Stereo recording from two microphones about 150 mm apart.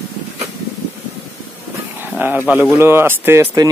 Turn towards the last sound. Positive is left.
turn(degrees=-20)  # may be behind; listen again after turning